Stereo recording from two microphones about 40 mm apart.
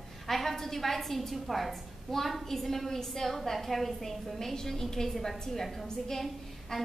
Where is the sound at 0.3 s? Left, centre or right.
Centre.